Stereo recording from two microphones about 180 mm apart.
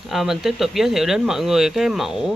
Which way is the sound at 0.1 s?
Centre (ahead or behind).